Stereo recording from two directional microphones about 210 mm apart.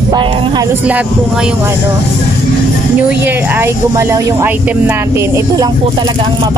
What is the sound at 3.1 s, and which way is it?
Speech, 10° right (ahead or behind).